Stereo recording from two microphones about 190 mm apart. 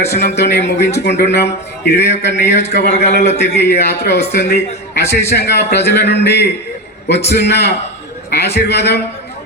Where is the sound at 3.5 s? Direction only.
60° left (ahead or behind).